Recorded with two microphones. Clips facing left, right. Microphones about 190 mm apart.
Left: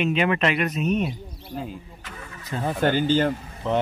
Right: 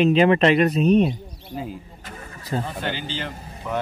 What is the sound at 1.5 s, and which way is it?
Speech, centre (ahead or behind).